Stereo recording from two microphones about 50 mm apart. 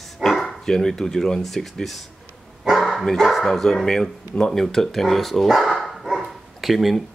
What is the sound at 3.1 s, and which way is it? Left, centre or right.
Speech, centre.